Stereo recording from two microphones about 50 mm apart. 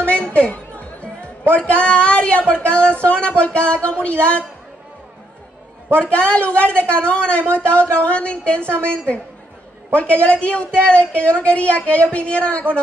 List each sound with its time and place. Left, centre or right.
0.0 s music: left
1.6 s a woman's voice: left
5.9 s a woman's voice: left
9.9 s a woman's voice: left